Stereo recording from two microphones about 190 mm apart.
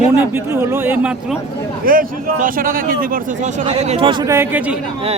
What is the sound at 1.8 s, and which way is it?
Speech, 50° right (ahead or behind).